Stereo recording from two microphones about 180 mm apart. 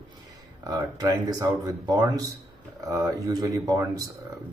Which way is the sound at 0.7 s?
20° right (ahead or behind).